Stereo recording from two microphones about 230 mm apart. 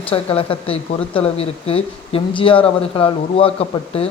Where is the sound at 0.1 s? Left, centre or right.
Left.